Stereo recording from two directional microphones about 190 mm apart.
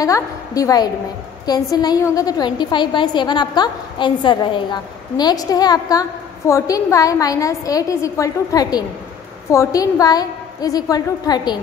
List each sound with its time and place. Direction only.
0.0 s a woman's voice: 20° left (ahead or behind)